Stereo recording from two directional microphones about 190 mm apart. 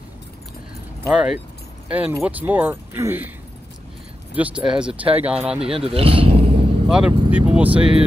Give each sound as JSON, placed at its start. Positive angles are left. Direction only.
{"t": 1.0, "sound": "speech", "side_deg": -5}
{"t": 4.3, "sound": "speech", "side_deg": -5}
{"t": 5.6, "sound": "speech", "side_deg": -30}
{"t": 6.9, "sound": "speech", "side_deg": -5}